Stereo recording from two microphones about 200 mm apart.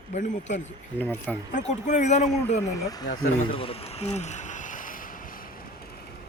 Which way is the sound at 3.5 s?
30° left (ahead or behind).